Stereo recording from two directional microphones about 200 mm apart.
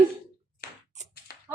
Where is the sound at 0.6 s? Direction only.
50° left (ahead or behind).